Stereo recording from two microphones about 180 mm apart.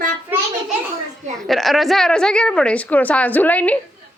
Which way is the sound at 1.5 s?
Centre (ahead or behind).